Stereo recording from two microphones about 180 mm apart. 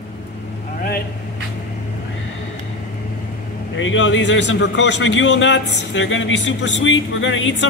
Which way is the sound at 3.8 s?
90° left.